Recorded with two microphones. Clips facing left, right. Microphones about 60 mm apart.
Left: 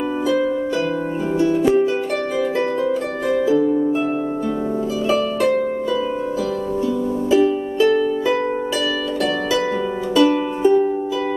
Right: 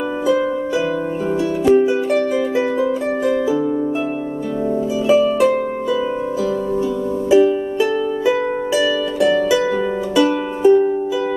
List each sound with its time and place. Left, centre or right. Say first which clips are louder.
1.4 s music: left 6 dB; centre
3.4 s harp: left 2 dB; centre
5.0 s harp: right 5 dB; centre
7.2 s music: right 4 dB; centre
10.1 s music: left 2 dB; centre